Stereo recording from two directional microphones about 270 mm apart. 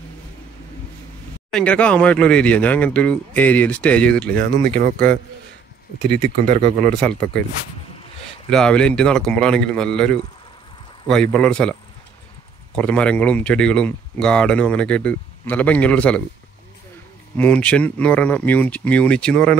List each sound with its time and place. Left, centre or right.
1.5 s speech: centre
6.0 s speech: centre
6.9 s speech: centre
8.5 s speech: centre
12.7 s speech: centre
17.4 s speech: centre